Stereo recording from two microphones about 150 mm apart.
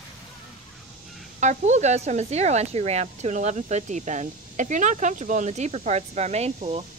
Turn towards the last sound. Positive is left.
turn(degrees=-40)  # may be behind; listen again after turning